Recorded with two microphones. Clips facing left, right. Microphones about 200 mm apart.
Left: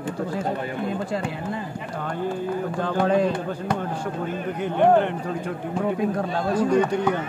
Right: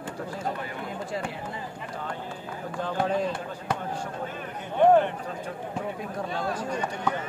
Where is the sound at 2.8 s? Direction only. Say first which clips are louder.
Left 5 dB; 90° left.